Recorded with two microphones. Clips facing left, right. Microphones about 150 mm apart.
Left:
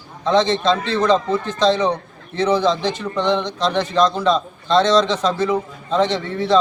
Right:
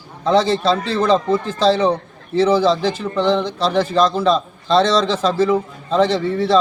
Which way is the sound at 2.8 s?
5° right (ahead or behind).